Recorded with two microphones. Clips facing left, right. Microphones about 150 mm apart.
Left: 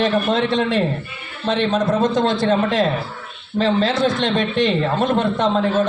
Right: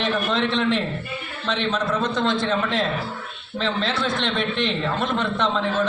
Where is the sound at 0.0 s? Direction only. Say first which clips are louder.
Left 5 dB; 40° left (ahead or behind).